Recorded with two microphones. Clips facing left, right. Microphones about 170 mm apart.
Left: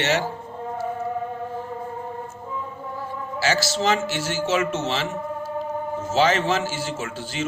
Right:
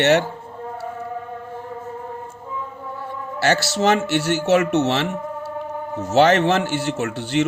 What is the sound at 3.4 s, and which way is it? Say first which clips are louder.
A man's voice: right 4 dB; 60° right (ahead or behind).